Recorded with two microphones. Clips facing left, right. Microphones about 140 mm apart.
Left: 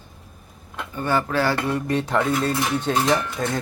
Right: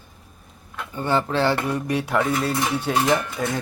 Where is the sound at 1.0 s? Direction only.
20° right (ahead or behind).